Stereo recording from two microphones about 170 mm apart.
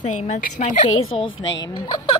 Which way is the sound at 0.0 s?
45° left (ahead or behind).